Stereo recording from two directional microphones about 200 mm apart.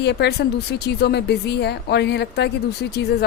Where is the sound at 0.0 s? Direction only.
55° left (ahead or behind).